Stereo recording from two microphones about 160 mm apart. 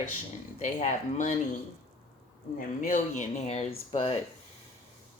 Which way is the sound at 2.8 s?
50° left (ahead or behind).